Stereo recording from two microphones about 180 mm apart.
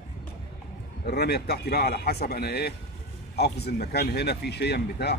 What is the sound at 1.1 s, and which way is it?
Speech, 65° left (ahead or behind).